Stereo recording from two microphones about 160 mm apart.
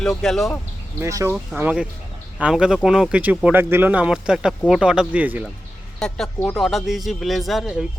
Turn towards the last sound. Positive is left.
turn(degrees=0)  # may be behind; listen again after turning